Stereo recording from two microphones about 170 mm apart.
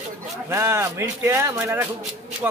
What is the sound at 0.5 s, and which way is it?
Speech, 15° right (ahead or behind).